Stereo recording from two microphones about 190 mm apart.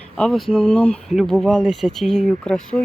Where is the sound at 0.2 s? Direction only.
Centre (ahead or behind).